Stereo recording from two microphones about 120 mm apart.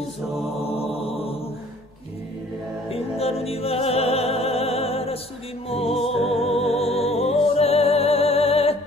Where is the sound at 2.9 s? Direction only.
55° left (ahead or behind).